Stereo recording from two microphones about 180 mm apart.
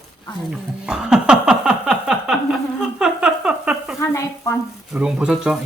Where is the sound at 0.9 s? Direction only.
5° right (ahead or behind).